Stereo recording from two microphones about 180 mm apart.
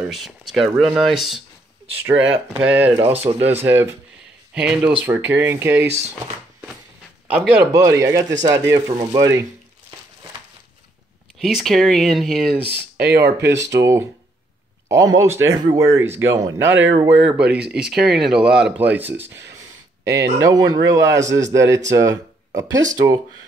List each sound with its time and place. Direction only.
0.1 s speech: centre (ahead or behind)
7.7 s speech: 15° right (ahead or behind)
11.3 s speech: centre (ahead or behind)
12.6 s speech: 65° right (ahead or behind)
13.2 s speech: 15° right (ahead or behind)
16.5 s speech: 90° right
17.0 s speech: 10° right (ahead or behind)
20.4 s speech: 20° right (ahead or behind)